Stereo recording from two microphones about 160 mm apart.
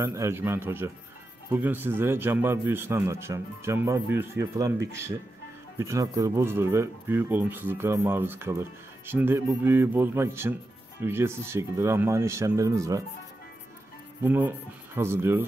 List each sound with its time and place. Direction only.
0.0 s speech: 20° right (ahead or behind)
14.2 s speech: 10° right (ahead or behind)